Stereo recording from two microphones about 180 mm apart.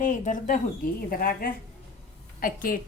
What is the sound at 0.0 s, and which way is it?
A woman's voice, 45° left (ahead or behind).